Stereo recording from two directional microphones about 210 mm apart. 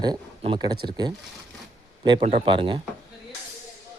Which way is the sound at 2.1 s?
30° right (ahead or behind).